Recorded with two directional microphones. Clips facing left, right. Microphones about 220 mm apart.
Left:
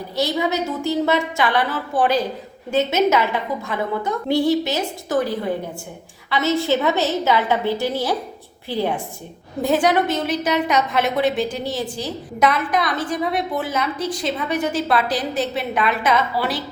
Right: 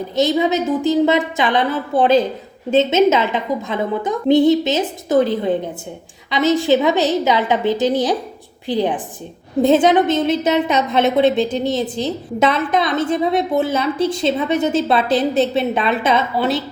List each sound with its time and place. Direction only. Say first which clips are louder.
0.2 s a woman's voice: right 5 dB; 20° right (ahead or behind)